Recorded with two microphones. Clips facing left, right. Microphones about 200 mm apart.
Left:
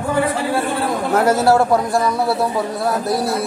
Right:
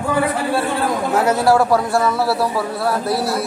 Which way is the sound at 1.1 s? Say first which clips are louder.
Left 3 dB; 50° left (ahead or behind).